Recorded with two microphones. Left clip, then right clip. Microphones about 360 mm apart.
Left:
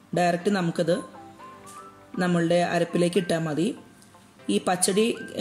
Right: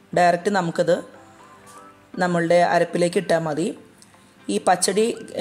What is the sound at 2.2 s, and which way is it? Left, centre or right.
Speech, centre.